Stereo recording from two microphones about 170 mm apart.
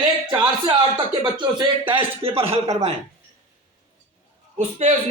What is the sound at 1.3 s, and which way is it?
Speech, 25° right (ahead or behind).